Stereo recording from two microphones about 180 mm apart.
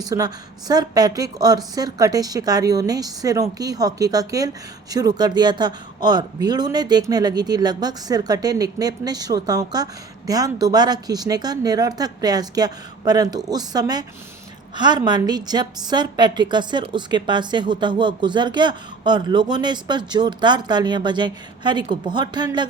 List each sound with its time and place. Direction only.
0.0 s a woman's voice: 20° right (ahead or behind)